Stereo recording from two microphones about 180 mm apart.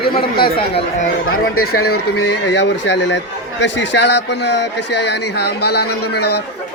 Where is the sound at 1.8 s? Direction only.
65° left (ahead or behind).